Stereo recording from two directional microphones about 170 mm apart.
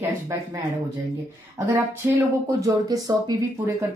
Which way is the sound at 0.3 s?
15° right (ahead or behind).